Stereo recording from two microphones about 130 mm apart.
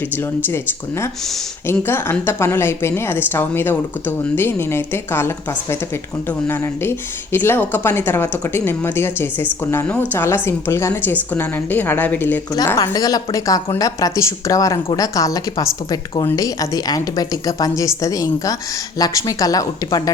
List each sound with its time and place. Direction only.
1.6 s a woman's voice: 20° left (ahead or behind)
7.3 s a woman's voice: 15° left (ahead or behind)
12.6 s a woman's voice: 25° left (ahead or behind)